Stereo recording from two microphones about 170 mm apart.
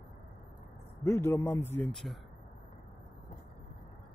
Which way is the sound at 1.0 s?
15° left (ahead or behind).